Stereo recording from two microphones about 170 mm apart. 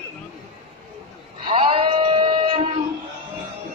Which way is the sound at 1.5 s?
30° right (ahead or behind).